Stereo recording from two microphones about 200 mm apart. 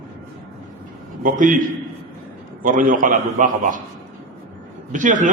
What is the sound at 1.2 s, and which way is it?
Speech, 40° right (ahead or behind).